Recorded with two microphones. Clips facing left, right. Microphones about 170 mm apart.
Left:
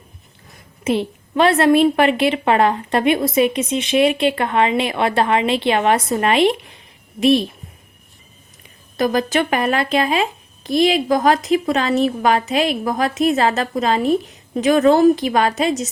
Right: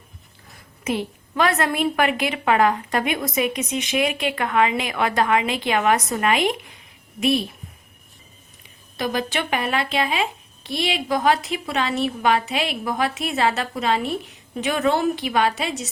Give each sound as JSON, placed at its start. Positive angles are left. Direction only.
{"t": 0.9, "sound": "a woman's voice", "side_deg": 25}
{"t": 9.0, "sound": "speech", "side_deg": 40}